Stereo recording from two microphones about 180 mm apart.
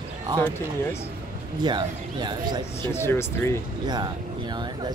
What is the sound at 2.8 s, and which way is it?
Speech, 15° left (ahead or behind).